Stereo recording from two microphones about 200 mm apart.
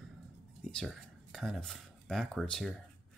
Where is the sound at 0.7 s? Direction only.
Centre (ahead or behind).